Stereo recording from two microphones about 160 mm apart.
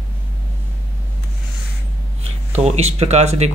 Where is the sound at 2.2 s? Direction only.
40° right (ahead or behind).